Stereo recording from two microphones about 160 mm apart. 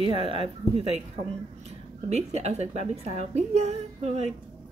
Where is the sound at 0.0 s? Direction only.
35° right (ahead or behind).